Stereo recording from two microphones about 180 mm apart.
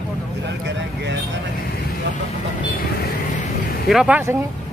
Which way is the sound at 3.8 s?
5° right (ahead or behind).